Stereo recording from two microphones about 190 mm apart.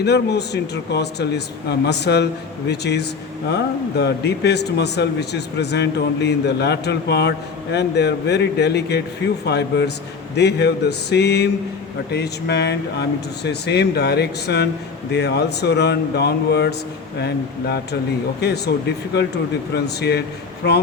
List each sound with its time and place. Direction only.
0.0 s a man's voice: 60° left (ahead or behind)